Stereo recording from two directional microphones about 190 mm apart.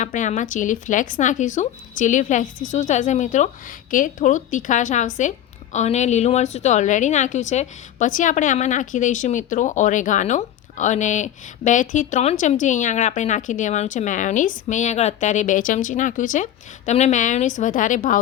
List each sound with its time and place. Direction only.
0.0 s a woman's voice: 40° left (ahead or behind)